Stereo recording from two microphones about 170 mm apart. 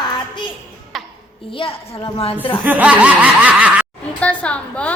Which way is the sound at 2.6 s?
10° right (ahead or behind).